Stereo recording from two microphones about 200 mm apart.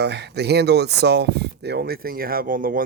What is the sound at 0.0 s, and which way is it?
Speech, 55° right (ahead or behind).